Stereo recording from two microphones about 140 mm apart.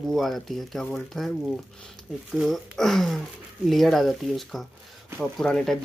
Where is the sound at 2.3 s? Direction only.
Centre (ahead or behind).